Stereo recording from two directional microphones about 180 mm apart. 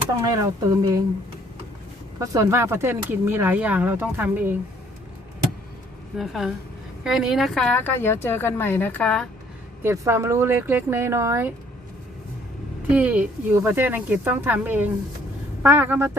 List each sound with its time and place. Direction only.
0.2 s speech: 20° right (ahead or behind)
2.1 s speech: 20° right (ahead or behind)
6.1 s a woman's voice: centre (ahead or behind)
9.8 s speech: 15° right (ahead or behind)
12.9 s speech: 10° right (ahead or behind)